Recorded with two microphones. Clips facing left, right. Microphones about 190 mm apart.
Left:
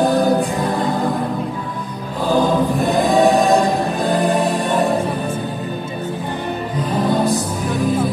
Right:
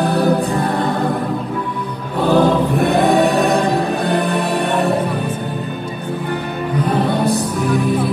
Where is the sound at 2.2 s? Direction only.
65° right (ahead or behind).